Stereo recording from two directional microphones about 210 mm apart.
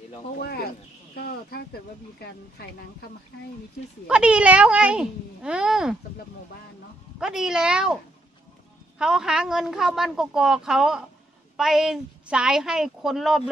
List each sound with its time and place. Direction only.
0.4 s speech: 50° left (ahead or behind)
4.1 s a woman's voice: 5° right (ahead or behind)
7.2 s a woman's voice: 5° right (ahead or behind)